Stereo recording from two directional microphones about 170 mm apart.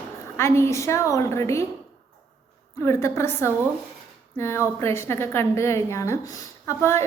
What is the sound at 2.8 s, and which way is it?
A woman's voice, 15° left (ahead or behind).